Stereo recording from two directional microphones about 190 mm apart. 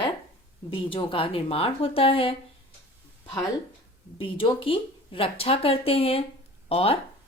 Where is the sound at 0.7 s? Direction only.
25° left (ahead or behind).